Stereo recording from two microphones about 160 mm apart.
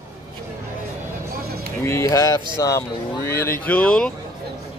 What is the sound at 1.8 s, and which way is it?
Speech, 15° left (ahead or behind).